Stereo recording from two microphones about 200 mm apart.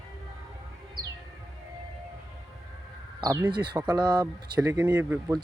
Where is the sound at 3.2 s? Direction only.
20° right (ahead or behind).